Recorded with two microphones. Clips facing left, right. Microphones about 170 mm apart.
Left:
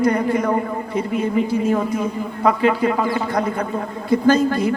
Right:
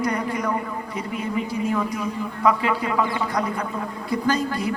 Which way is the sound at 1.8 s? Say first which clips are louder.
Left 5 dB; 25° left (ahead or behind).